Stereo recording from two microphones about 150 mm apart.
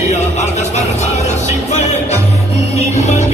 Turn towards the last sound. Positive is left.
turn(degrees=50)  # may be behind; listen again after turning